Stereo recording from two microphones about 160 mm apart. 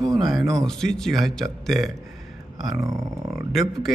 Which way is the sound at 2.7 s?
20° right (ahead or behind).